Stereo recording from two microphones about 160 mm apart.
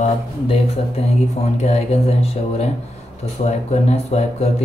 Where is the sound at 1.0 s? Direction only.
40° left (ahead or behind).